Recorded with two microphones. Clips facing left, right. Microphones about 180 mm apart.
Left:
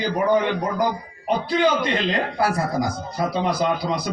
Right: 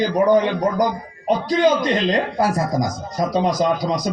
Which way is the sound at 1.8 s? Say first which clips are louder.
Right 4 dB; 40° right (ahead or behind).